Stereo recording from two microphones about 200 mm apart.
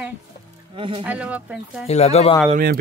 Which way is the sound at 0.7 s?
25° right (ahead or behind).